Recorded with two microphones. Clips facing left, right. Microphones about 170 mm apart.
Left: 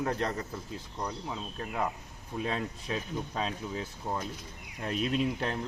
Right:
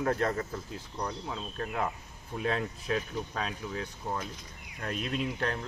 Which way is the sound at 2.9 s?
20° left (ahead or behind).